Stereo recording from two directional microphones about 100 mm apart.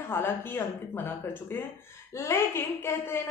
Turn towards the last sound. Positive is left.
turn(degrees=25)  # may be behind; listen again after turning